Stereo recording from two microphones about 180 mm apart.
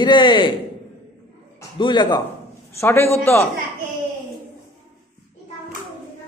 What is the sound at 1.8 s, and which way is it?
A man's voice, 25° left (ahead or behind).